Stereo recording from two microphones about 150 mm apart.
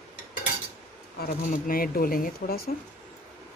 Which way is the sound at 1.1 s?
75° left (ahead or behind).